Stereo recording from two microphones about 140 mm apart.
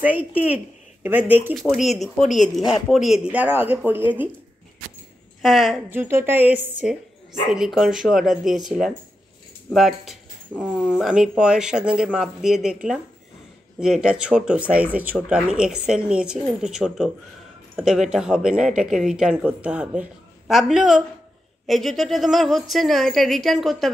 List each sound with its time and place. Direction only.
0.0 s speech: 10° right (ahead or behind)
1.5 s speech: centre (ahead or behind)
2.2 s speech: 60° left (ahead or behind)
2.7 s speech: centre (ahead or behind)
3.3 s speech: 10° right (ahead or behind)
5.4 s speech: centre (ahead or behind)
5.9 s speech: 15° right (ahead or behind); by 23.9 s centre (ahead or behind)